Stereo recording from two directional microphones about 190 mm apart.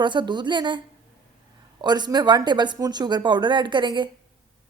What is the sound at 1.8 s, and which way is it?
A man's voice, 20° right (ahead or behind).